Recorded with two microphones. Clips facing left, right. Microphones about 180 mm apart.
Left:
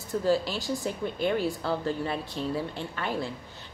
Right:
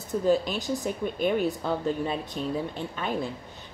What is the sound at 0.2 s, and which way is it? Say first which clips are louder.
Speech: right 2 dB; 20° right (ahead or behind).